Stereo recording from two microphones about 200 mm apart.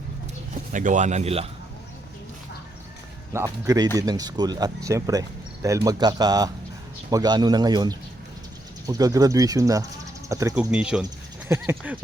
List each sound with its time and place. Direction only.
0.7 s speech: 40° right (ahead or behind)
3.3 s speech: 20° right (ahead or behind)
10.7 s speech: 5° right (ahead or behind)